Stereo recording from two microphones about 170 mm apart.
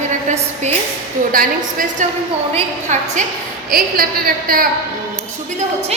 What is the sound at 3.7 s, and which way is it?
A woman's voice, 60° right (ahead or behind).